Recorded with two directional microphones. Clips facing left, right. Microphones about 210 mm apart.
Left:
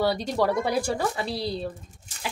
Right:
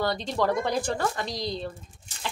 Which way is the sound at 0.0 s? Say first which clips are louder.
Left 3 dB; 10° left (ahead or behind).